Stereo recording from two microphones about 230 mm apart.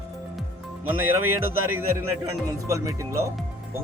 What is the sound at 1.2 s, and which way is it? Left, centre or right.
Speech, right.